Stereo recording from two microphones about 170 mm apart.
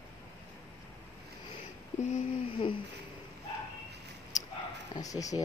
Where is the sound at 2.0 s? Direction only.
45° left (ahead or behind).